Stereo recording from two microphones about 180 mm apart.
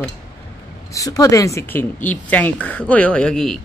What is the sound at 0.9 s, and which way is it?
Speech, 20° left (ahead or behind).